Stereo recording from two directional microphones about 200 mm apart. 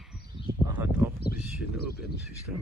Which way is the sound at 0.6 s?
10° right (ahead or behind).